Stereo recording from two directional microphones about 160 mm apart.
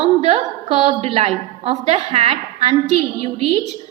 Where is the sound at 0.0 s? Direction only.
40° right (ahead or behind).